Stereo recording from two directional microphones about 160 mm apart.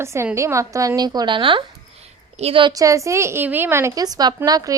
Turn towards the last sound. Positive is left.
turn(degrees=-25)  # may be behind; listen again after turning